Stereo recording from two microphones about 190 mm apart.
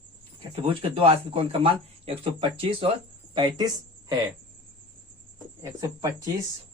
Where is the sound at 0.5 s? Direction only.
30° right (ahead or behind).